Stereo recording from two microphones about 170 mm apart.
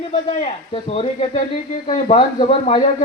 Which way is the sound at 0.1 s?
35° left (ahead or behind).